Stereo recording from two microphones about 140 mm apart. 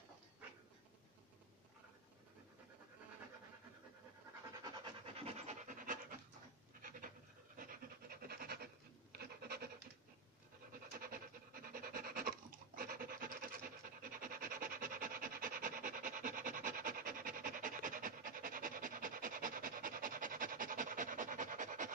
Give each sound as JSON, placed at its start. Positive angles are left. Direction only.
{"t": 4.6, "sound": "pant", "side_deg": -40}
{"t": 7.5, "sound": "pant", "side_deg": -90}
{"t": 9.1, "sound": "a sound", "side_deg": -90}
{"t": 11.0, "sound": "pant", "side_deg": -90}